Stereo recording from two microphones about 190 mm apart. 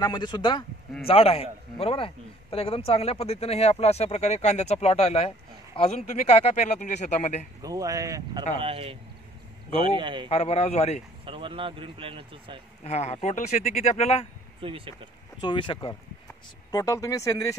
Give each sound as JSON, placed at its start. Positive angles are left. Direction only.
{"t": 0.0, "sound": "a man's voice", "side_deg": 25}
{"t": 7.6, "sound": "speech", "side_deg": -20}
{"t": 8.5, "sound": "speech", "side_deg": -30}
{"t": 10.3, "sound": "a man's voice", "side_deg": 35}
{"t": 11.2, "sound": "speech", "side_deg": -30}
{"t": 12.8, "sound": "a man's voice", "side_deg": 35}
{"t": 14.6, "sound": "speech", "side_deg": -30}
{"t": 15.4, "sound": "speech", "side_deg": 25}